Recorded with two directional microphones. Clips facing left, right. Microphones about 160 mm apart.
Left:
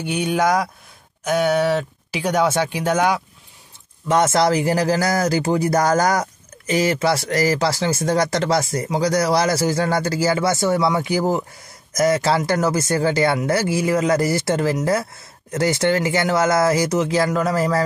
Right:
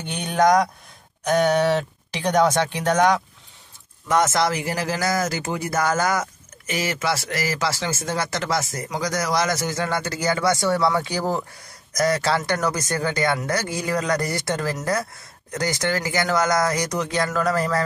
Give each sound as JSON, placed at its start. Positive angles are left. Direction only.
{"t": 0.0, "sound": "speech", "side_deg": 10}
{"t": 4.1, "sound": "speech", "side_deg": 30}